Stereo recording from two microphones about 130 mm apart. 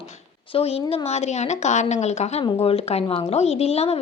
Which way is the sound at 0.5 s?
50° left (ahead or behind).